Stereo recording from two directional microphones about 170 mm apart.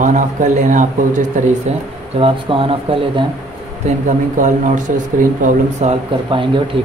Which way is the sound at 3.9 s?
45° right (ahead or behind).